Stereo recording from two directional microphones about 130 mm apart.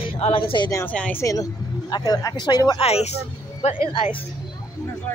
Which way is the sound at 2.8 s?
50° left (ahead or behind).